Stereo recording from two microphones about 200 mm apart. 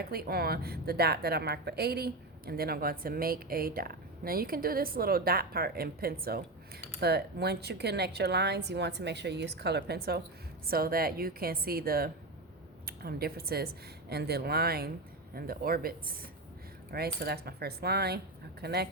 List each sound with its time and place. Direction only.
0.0 s a woman's voice: 50° right (ahead or behind)